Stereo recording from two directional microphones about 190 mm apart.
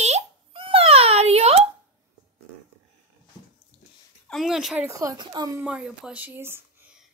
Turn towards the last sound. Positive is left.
turn(degrees=-10)  # may be behind; listen again after turning